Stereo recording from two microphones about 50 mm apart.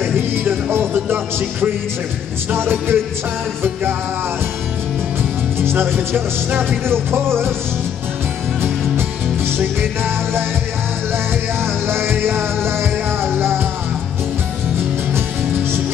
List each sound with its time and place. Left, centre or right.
0.0 s music: right
2.5 s music: right
5.6 s music: right
8.6 s music: right
11.6 s music: right